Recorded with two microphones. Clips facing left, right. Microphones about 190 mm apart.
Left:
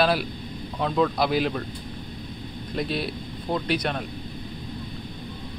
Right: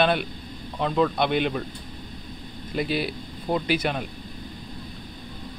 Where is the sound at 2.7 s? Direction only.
Centre (ahead or behind).